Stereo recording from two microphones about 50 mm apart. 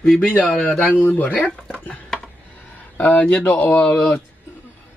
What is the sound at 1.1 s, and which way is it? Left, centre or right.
Speech, left.